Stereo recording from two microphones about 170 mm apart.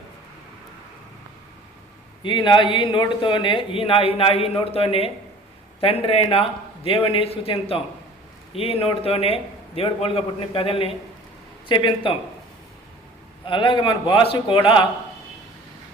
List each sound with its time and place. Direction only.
2.2 s a man's voice: 30° left (ahead or behind)
13.5 s speech: 30° left (ahead or behind)